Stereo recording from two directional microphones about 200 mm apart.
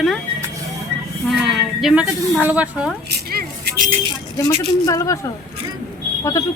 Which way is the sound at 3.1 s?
50° right (ahead or behind).